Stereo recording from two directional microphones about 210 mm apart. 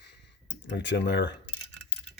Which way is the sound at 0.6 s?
60° left (ahead or behind).